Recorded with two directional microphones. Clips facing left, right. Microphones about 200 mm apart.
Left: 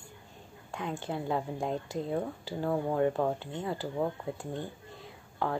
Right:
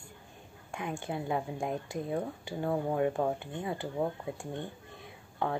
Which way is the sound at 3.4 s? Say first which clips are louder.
Left 1 dB; 15° right (ahead or behind).